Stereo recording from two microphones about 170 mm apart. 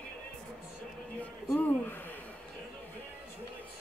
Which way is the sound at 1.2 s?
10° left (ahead or behind).